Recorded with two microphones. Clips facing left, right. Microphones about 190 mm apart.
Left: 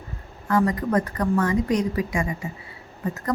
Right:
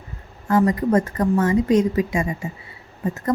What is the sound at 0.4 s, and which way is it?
A woman's voice, 25° right (ahead or behind).